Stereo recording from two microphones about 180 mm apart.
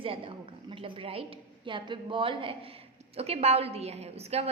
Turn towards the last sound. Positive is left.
turn(degrees=-35)  # may be behind; listen again after turning